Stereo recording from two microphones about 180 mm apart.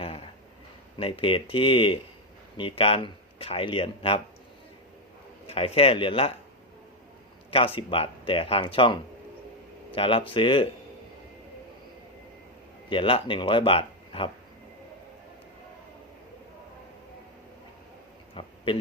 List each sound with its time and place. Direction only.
0.0 s a sound: 30° left (ahead or behind)
0.9 s speech: 30° left (ahead or behind)
5.5 s speech: 35° left (ahead or behind)
7.5 s speech: 30° left (ahead or behind)
12.9 s speech: 30° left (ahead or behind)
18.3 s a sound: 30° left (ahead or behind)